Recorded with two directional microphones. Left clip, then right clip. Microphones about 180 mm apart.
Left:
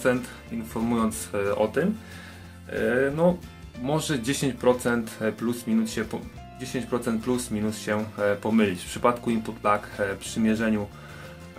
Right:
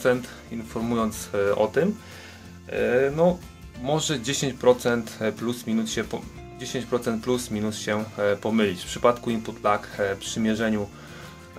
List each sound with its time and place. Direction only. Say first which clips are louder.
0.8 s speech: right 1 dB; 20° right (ahead or behind)
3.8 s speech: right 1 dB; 15° right (ahead or behind)